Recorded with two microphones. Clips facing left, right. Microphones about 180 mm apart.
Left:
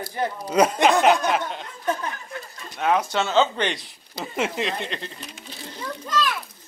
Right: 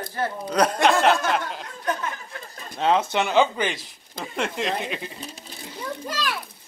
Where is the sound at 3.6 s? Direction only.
Centre (ahead or behind).